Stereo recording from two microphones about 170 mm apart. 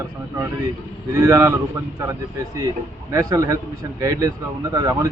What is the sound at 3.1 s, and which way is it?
A man's voice, 20° right (ahead or behind).